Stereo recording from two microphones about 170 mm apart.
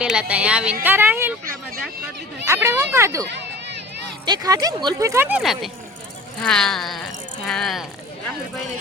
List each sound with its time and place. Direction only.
0.0 s speech: 5° right (ahead or behind)
2.5 s speech: 15° right (ahead or behind)
4.3 s speech: 20° right (ahead or behind)
5.4 s speech: centre (ahead or behind)